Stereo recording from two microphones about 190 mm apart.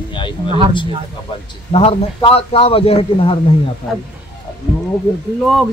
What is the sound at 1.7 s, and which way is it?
A man's voice, 30° left (ahead or behind).